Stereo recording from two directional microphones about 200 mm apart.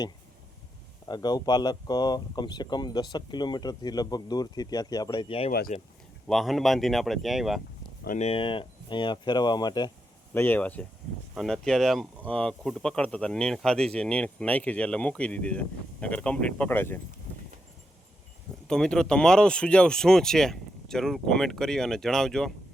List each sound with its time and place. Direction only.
1.0 s speech: 20° left (ahead or behind)
5.5 s speech: 45° left (ahead or behind)
6.2 s speech: centre (ahead or behind)
8.0 s speech: 35° left (ahead or behind); by 9.9 s 20° left (ahead or behind)
10.3 s speech: 10° left (ahead or behind)
18.7 s speech: 5° left (ahead or behind)